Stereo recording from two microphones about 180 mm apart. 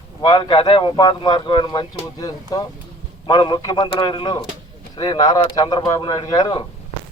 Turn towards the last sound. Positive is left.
turn(degrees=25)  # may be behind; listen again after turning